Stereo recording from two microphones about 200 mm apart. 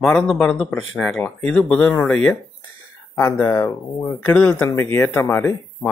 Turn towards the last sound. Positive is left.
turn(degrees=10)  # may be behind; listen again after turning